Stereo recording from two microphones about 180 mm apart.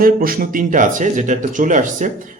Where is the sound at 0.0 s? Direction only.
55° right (ahead or behind).